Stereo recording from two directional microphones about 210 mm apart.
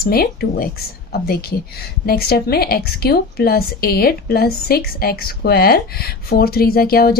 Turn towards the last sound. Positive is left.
turn(degrees=45)  # may be behind; listen again after turning